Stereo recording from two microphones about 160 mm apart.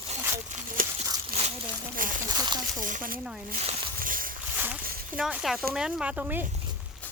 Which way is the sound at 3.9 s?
60° right (ahead or behind).